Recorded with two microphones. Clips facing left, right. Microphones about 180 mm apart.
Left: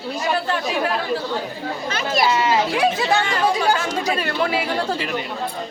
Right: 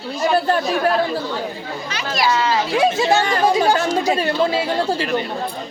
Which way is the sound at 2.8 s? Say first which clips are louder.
Right 3 dB; 35° right (ahead or behind).